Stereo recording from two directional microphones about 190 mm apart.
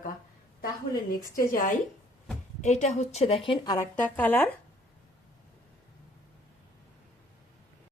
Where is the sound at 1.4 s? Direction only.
45° left (ahead or behind); by 3.8 s 20° left (ahead or behind).